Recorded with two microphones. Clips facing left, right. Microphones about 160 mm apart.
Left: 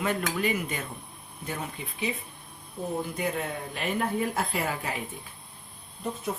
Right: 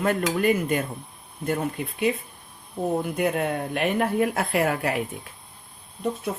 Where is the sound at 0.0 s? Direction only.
50° right (ahead or behind).